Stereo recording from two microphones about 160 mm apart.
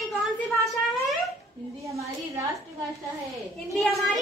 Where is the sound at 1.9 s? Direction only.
20° right (ahead or behind).